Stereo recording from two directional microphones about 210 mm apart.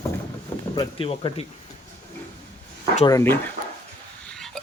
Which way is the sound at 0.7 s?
25° left (ahead or behind).